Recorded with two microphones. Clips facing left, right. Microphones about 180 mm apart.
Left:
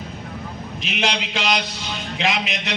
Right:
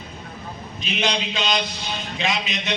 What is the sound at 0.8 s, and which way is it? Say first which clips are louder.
Speech: even; 75° left (ahead or behind).